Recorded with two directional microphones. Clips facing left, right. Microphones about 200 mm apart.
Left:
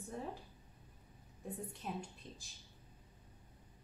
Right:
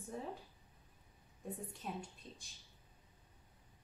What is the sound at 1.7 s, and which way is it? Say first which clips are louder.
Speech: left 1 dB; centre (ahead or behind).